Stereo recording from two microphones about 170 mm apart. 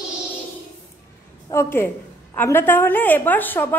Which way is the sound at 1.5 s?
15° left (ahead or behind).